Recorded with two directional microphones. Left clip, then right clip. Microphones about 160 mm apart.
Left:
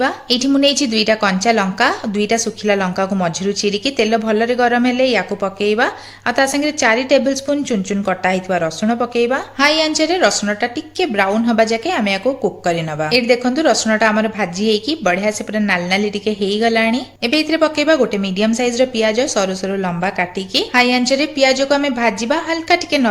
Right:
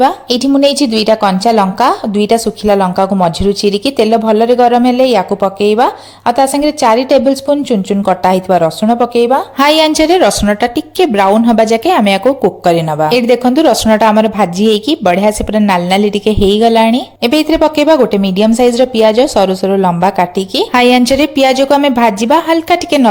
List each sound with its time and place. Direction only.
0.0 s a woman's voice: 30° right (ahead or behind)
9.6 s a woman's voice: 50° right (ahead or behind)